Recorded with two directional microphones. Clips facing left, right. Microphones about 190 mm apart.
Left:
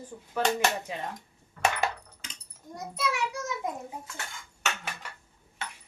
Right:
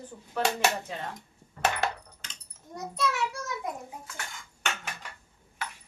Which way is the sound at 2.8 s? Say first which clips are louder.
Right 1 dB; 10° left (ahead or behind).